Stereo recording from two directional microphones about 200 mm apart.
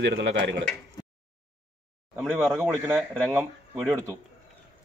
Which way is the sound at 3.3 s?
10° right (ahead or behind).